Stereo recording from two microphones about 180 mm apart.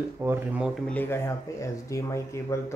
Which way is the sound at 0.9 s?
10° left (ahead or behind).